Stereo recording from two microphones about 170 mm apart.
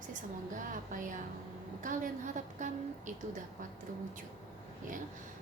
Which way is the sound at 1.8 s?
50° right (ahead or behind).